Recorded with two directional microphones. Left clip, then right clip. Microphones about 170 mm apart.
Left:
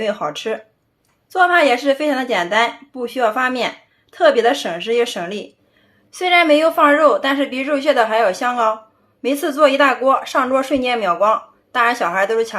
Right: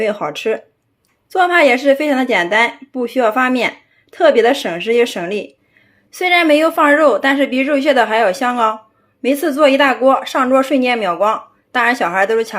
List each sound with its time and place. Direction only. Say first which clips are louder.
0.0 s a woman's voice: right 3 dB; 25° right (ahead or behind)